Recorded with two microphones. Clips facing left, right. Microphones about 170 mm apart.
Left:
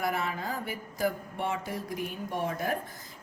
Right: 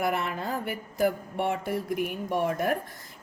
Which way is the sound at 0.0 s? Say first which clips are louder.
Right 3 dB; 65° right (ahead or behind).